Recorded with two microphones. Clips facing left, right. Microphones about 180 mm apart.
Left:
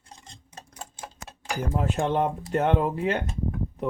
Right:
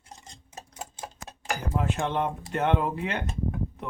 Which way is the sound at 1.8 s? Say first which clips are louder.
Left 3 dB; 40° left (ahead or behind).